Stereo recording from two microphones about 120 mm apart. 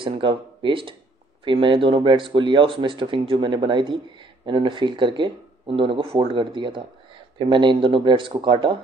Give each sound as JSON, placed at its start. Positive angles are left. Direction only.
{"t": 0.2, "sound": "speech", "side_deg": -45}